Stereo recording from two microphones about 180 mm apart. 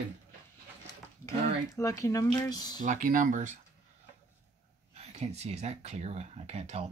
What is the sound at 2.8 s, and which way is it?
Speech, 45° right (ahead or behind).